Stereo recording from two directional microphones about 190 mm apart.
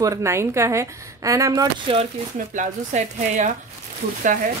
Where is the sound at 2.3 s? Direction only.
40° right (ahead or behind).